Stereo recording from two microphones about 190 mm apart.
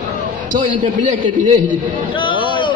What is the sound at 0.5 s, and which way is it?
Speech, 40° right (ahead or behind).